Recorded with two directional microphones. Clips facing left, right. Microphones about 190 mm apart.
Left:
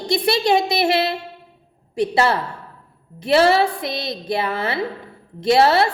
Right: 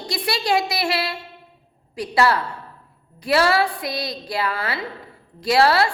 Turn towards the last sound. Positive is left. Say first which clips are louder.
# left 2 dB
turn(degrees=25)  # may be behind; listen again after turning